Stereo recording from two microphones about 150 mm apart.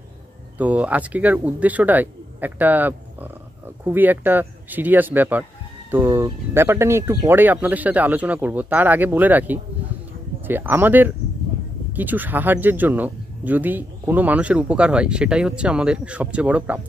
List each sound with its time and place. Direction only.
0.6 s speech: 10° right (ahead or behind)